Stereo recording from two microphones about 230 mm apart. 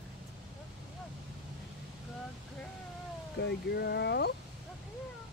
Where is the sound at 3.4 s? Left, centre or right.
Left.